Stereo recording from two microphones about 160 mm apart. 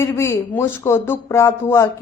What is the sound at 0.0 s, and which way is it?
A woman's voice, 15° left (ahead or behind).